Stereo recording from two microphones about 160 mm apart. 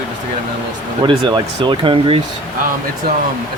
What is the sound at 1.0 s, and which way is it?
Speech, 30° right (ahead or behind).